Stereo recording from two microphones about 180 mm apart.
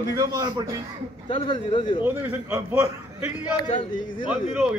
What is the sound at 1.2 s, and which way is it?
Speech, 30° left (ahead or behind).